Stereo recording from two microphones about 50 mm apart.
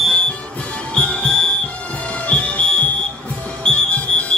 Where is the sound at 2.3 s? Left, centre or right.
Left.